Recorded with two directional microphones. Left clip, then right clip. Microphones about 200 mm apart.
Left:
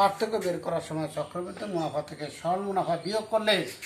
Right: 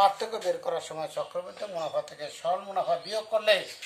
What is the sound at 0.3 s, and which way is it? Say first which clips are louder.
Speech: left 1 dB; 40° right (ahead or behind).